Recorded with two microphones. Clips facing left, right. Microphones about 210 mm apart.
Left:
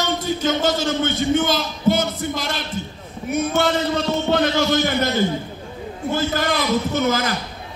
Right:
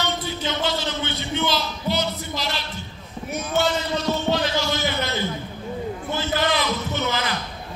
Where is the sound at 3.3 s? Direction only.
55° left (ahead or behind).